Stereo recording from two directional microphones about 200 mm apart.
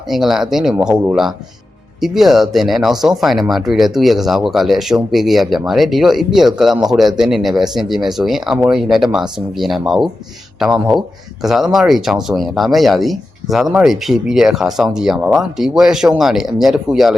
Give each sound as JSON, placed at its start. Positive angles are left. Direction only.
{"t": 0.1, "sound": "speech", "side_deg": 0}